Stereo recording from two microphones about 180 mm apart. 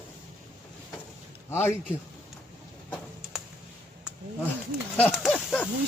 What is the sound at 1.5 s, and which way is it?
Speech, 15° left (ahead or behind).